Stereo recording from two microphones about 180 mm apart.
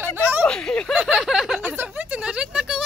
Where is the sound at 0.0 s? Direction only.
10° right (ahead or behind).